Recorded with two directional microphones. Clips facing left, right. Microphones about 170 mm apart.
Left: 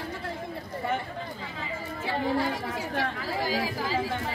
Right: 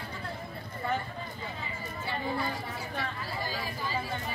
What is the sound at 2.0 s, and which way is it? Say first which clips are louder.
Speech: left 6 dB; 90° left.